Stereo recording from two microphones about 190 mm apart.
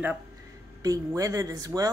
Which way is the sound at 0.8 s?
15° right (ahead or behind).